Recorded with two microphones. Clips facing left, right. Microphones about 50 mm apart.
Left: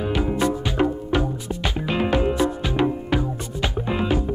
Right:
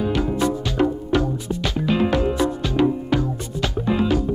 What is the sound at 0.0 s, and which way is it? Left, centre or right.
Music, centre.